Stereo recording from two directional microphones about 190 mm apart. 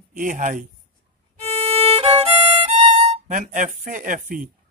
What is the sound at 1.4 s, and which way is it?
Violin, 30° right (ahead or behind).